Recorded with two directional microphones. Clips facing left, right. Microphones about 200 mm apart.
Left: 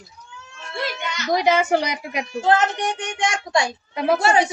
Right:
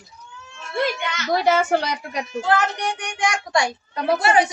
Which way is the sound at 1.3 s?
15° left (ahead or behind).